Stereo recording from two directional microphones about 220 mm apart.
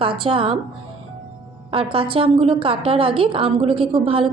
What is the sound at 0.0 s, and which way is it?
Speech, 25° right (ahead or behind).